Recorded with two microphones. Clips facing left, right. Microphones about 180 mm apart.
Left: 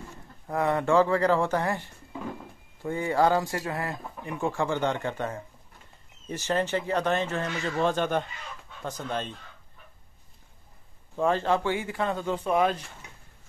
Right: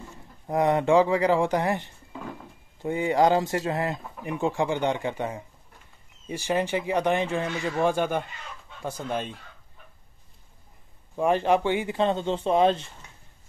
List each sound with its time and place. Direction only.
0.5 s speech: 20° right (ahead or behind)
11.1 s speech: 15° right (ahead or behind)